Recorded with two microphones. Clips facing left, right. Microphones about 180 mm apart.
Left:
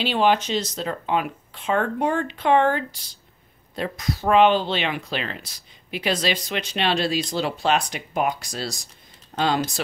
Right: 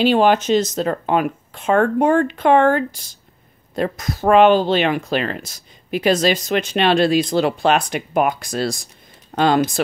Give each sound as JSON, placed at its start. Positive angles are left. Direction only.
{"t": 0.0, "sound": "speech", "side_deg": -45}